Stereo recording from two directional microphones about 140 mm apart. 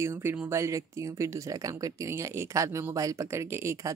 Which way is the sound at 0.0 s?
20° right (ahead or behind).